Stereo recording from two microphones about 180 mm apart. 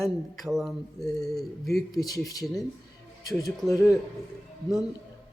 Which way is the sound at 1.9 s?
20° left (ahead or behind).